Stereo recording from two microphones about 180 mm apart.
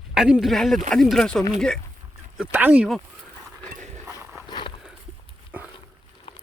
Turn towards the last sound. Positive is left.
turn(degrees=-10)  # may be behind; listen again after turning